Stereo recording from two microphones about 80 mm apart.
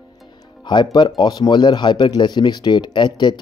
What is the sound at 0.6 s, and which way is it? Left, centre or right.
Speech, left.